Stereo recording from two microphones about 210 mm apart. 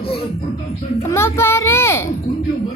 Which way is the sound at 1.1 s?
10° left (ahead or behind).